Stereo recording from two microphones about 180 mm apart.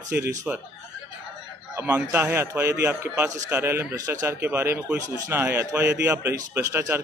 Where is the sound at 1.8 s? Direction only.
10° right (ahead or behind).